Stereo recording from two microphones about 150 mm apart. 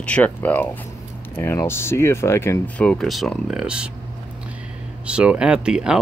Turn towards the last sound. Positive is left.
turn(degrees=-5)  # may be behind; listen again after turning